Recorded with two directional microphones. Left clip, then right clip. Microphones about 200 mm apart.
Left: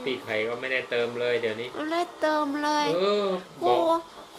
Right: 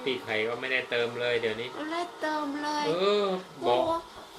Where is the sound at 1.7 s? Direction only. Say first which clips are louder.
Left 5 dB; 55° left (ahead or behind).